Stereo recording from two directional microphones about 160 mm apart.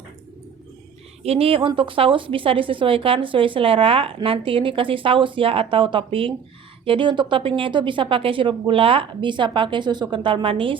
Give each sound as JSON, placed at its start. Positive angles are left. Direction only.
{"t": 1.2, "sound": "a woman's voice", "side_deg": -40}